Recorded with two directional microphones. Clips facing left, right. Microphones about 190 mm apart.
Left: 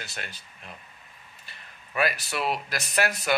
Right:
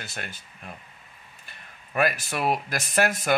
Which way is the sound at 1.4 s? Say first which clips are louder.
Right 1 dB; 50° right (ahead or behind).